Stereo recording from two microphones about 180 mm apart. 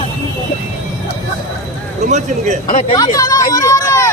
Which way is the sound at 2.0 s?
40° right (ahead or behind).